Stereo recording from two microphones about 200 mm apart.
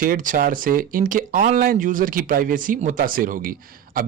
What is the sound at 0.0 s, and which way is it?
Speech, 45° right (ahead or behind).